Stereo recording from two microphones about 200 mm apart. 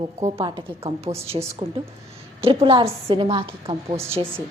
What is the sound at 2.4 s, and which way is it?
A woman's voice, 25° right (ahead or behind).